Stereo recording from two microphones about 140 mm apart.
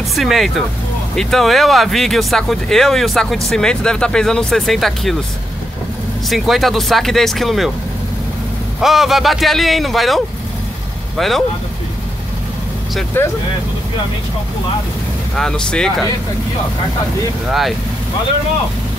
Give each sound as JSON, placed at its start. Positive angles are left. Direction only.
{"t": 0.1, "sound": "speech", "side_deg": 0}
{"t": 6.2, "sound": "speech", "side_deg": 0}
{"t": 8.8, "sound": "speech", "side_deg": 0}
{"t": 13.2, "sound": "speech", "side_deg": 15}
{"t": 15.3, "sound": "speech", "side_deg": 5}
{"t": 17.5, "sound": "speech", "side_deg": 0}